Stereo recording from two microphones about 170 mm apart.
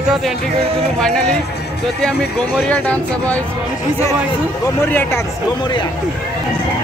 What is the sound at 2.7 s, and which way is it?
Speech, 10° left (ahead or behind).